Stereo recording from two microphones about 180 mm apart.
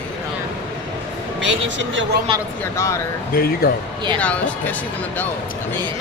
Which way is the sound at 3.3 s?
60° left (ahead or behind).